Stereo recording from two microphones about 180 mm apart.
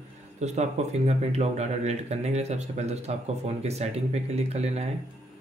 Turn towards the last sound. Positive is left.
turn(degrees=-35)  # may be behind; listen again after turning